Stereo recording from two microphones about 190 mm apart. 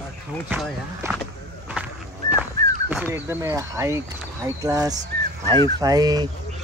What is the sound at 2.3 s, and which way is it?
Speech, 5° right (ahead or behind).